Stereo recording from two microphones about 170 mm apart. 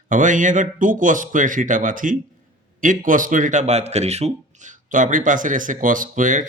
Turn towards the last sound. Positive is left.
turn(degrees=-50)  # may be behind; listen again after turning